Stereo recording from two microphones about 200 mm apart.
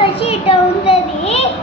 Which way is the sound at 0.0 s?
30° left (ahead or behind).